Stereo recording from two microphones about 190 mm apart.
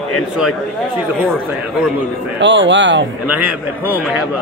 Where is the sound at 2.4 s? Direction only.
70° right (ahead or behind).